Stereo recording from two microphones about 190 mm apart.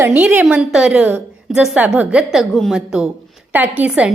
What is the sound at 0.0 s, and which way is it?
A woman's voice, 10° right (ahead or behind).